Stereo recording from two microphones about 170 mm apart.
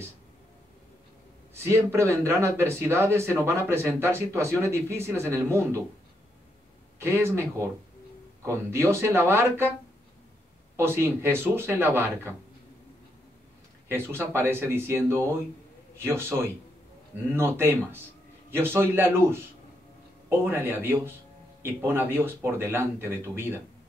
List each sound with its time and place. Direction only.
1.5 s speech: 15° right (ahead or behind)
7.0 s speech: 15° right (ahead or behind)
10.8 s speech: 15° right (ahead or behind)
13.8 s speech: 15° right (ahead or behind)